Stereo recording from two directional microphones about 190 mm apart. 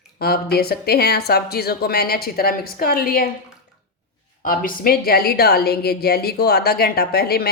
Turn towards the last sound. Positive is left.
turn(degrees=55)  # may be behind; listen again after turning